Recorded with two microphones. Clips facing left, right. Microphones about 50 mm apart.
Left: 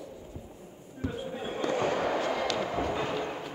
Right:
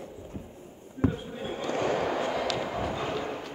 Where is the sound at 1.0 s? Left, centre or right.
Right.